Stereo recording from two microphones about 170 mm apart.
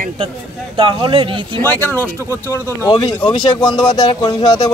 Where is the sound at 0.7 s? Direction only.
30° right (ahead or behind).